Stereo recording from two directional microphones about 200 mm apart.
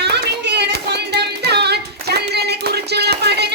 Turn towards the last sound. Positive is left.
turn(degrees=-55)  # may be behind; listen again after turning